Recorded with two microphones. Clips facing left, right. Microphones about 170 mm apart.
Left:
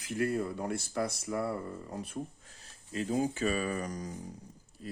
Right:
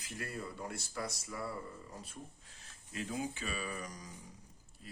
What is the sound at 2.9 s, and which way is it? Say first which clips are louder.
Speech: left 8 dB; 35° left (ahead or behind).